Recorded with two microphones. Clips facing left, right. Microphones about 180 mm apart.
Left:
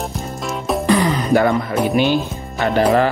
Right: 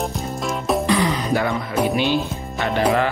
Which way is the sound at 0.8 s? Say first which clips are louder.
Left 4 dB; 50° left (ahead or behind).